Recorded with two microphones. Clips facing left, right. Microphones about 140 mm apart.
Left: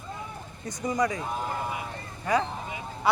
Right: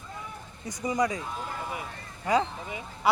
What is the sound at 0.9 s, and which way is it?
Speech, 15° right (ahead or behind).